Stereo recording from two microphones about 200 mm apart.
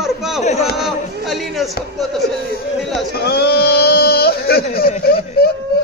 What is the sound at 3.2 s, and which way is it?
Speech, 50° left (ahead or behind).